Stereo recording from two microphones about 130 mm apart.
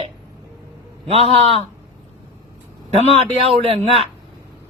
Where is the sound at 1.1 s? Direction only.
50° right (ahead or behind).